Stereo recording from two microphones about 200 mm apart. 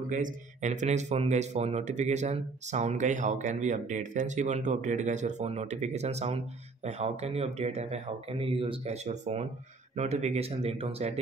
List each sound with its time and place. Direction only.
0.1 s speech: 40° right (ahead or behind)